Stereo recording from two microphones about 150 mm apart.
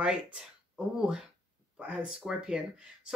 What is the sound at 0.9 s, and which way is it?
A woman's voice, 5° right (ahead or behind).